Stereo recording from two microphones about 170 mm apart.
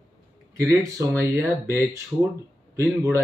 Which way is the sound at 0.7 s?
15° right (ahead or behind).